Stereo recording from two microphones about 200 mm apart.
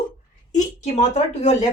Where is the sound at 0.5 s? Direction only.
35° left (ahead or behind).